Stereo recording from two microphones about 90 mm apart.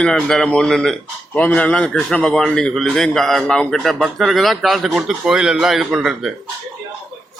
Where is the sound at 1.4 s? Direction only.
15° left (ahead or behind); by 6.3 s 5° right (ahead or behind).